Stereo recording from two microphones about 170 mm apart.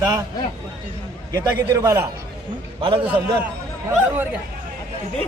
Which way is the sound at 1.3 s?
20° right (ahead or behind).